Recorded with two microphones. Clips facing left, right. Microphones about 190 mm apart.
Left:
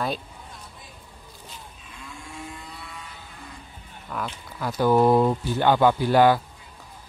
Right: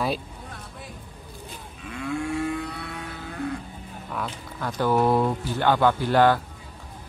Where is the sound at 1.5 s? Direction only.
70° right (ahead or behind).